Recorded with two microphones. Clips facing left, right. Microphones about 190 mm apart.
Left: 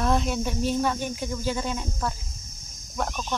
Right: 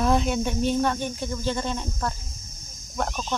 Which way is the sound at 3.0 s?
Centre (ahead or behind).